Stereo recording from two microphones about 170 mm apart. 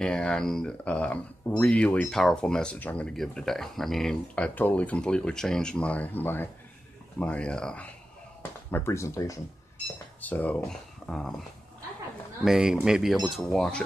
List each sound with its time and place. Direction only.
0.0 s speech: 5° left (ahead or behind)
12.4 s speech: 5° right (ahead or behind)